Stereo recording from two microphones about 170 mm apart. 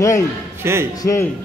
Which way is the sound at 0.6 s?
15° right (ahead or behind).